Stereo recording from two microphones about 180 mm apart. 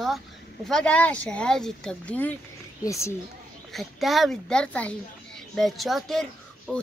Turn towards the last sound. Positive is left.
turn(degrees=0)  # may be behind; listen again after turning